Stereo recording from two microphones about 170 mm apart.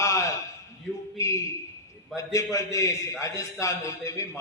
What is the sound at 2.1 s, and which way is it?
A man's voice, 20° left (ahead or behind).